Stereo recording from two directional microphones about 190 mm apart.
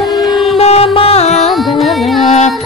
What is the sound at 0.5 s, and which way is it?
Music, 30° left (ahead or behind).